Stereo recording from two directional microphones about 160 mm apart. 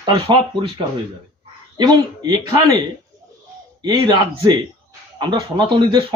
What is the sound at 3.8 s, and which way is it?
Speech, 25° right (ahead or behind).